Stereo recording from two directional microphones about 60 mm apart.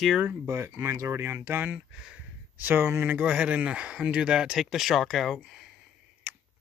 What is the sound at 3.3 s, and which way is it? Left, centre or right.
Speech, centre.